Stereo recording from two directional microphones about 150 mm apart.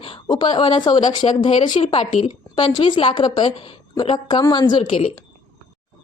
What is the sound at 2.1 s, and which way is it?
Speech, 50° left (ahead or behind).